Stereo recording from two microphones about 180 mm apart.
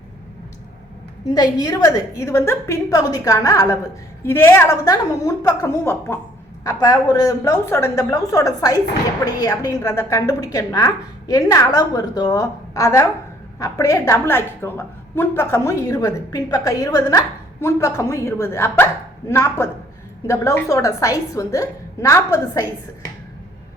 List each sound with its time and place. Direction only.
1.3 s a woman's voice: 20° left (ahead or behind)